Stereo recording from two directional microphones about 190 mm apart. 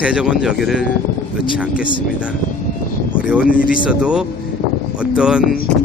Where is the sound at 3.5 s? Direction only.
45° left (ahead or behind).